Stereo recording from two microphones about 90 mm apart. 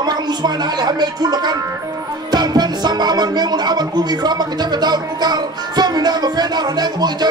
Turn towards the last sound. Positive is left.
turn(degrees=-50)  # may be behind; listen again after turning